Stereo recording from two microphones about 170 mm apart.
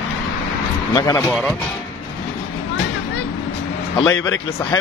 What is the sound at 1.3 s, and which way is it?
Speech, 5° left (ahead or behind).